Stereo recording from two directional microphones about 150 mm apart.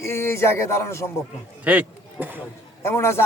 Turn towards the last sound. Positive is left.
turn(degrees=15)  # may be behind; listen again after turning